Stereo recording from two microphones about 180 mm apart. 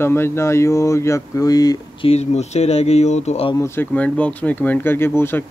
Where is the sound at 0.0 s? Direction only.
15° left (ahead or behind).